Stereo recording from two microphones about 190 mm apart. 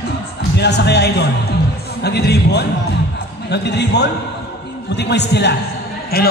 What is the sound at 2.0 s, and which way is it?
A man's voice, 60° left (ahead or behind).